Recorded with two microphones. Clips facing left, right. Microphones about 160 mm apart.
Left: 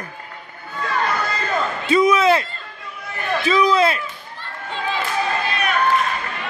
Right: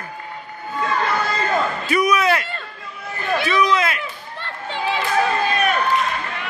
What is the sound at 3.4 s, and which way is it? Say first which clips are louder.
Run: left 4 dB; 30° left (ahead or behind).